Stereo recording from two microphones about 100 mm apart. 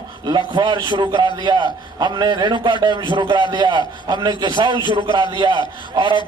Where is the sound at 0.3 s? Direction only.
45° right (ahead or behind).